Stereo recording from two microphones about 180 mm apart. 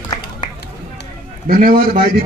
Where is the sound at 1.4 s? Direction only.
50° right (ahead or behind).